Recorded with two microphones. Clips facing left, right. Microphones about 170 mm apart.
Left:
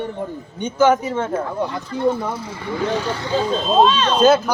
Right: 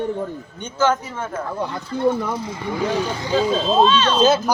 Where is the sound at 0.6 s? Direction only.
15° left (ahead or behind).